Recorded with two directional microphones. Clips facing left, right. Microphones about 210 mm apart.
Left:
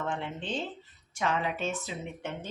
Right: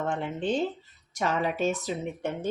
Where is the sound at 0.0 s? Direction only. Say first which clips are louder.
Right 5 dB; 45° right (ahead or behind).